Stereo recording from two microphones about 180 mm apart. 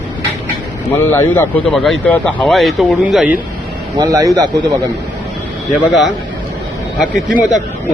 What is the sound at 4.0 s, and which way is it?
Speech, 15° right (ahead or behind).